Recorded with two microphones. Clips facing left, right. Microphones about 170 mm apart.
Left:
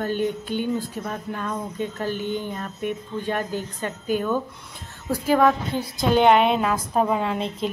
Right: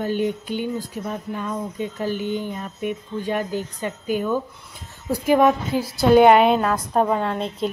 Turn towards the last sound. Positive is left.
turn(degrees=0)  # may be behind; listen again after turning